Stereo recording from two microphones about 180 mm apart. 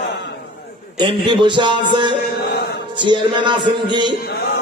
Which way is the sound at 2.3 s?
65° left (ahead or behind).